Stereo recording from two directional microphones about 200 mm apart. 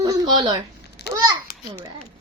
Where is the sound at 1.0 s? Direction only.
55° left (ahead or behind).